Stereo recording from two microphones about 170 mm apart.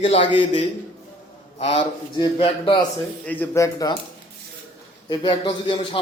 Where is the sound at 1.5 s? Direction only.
40° left (ahead or behind).